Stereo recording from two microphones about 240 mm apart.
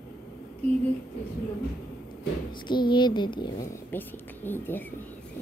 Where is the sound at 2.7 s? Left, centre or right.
Centre.